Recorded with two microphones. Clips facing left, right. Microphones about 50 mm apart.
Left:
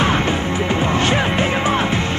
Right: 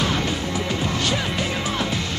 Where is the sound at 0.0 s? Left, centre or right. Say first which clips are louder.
Left 6 dB; left.